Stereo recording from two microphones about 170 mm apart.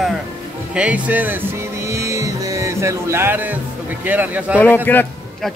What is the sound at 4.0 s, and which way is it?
Speech, 10° right (ahead or behind).